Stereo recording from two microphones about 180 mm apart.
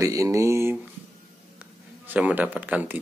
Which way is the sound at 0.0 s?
20° right (ahead or behind).